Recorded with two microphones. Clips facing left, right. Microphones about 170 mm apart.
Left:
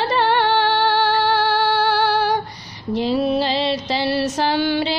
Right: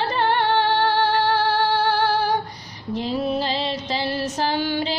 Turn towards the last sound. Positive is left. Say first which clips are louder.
# left 4 dB
turn(degrees=80)